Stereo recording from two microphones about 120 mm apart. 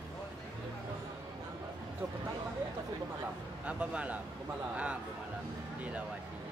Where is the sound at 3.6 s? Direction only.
10° right (ahead or behind).